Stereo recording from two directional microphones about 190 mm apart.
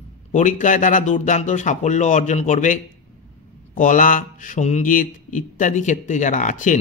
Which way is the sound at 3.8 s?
45° left (ahead or behind).